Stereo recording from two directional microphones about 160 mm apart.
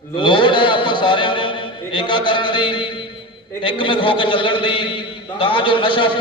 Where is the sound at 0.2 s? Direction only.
30° left (ahead or behind).